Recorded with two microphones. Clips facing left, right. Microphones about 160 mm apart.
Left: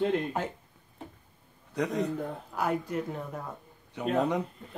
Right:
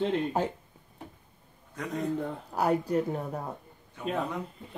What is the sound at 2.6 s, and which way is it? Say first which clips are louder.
Speech: right 4 dB; 35° right (ahead or behind).